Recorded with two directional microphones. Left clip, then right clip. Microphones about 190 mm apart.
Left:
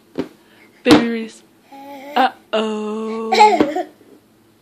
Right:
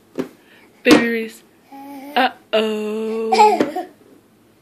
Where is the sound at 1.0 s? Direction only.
25° left (ahead or behind).